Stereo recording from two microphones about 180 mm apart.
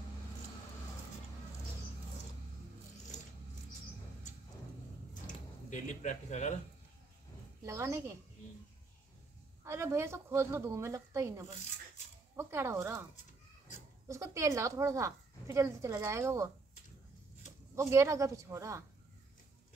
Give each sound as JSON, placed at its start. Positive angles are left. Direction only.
{"t": 5.2, "sound": "a sound", "side_deg": 45}
{"t": 7.6, "sound": "speech", "side_deg": -15}
{"t": 9.7, "sound": "speech", "side_deg": -15}
{"t": 14.0, "sound": "speech", "side_deg": -15}
{"t": 17.7, "sound": "speech", "side_deg": -15}